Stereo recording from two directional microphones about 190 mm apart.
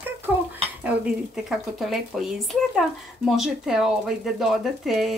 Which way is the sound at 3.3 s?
Centre (ahead or behind).